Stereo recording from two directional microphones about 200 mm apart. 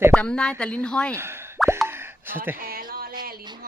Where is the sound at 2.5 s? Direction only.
45° right (ahead or behind).